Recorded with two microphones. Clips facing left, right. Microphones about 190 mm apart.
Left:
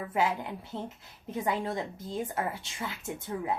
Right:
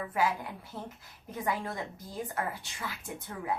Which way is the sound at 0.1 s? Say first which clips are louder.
Left 2 dB; 25° left (ahead or behind).